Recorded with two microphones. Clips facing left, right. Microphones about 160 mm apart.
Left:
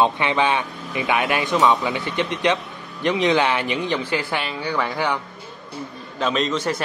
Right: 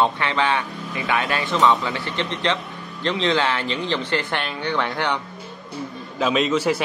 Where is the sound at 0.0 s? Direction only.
15° left (ahead or behind).